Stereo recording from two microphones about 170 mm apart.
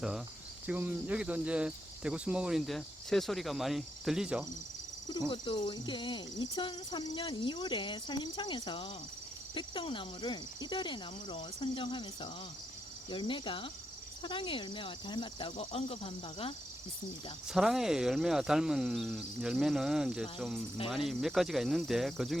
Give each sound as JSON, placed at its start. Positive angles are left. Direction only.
{"t": 0.7, "sound": "speech", "side_deg": -10}
{"t": 5.0, "sound": "speech", "side_deg": 25}
{"t": 17.5, "sound": "speech", "side_deg": 0}